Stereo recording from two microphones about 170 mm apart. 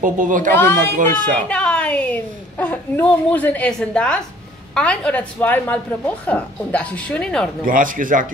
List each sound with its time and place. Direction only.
0.0 s speech: 50° right (ahead or behind)
0.6 s a woman's voice: 15° left (ahead or behind)
0.9 s speech: 50° right (ahead or behind)
1.5 s a woman's voice: 5° left (ahead or behind)
7.6 s speech: 55° right (ahead or behind)